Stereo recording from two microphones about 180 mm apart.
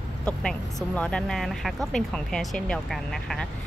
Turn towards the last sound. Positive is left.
turn(degrees=0)  # may be behind; listen again after turning